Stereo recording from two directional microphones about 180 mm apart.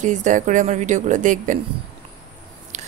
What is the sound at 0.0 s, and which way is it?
Speech, 45° right (ahead or behind).